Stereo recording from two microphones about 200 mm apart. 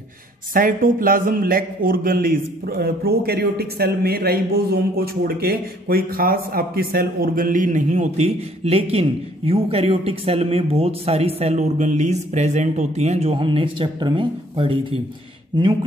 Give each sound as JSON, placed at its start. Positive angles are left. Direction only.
{"t": 0.5, "sound": "a man's voice", "side_deg": -45}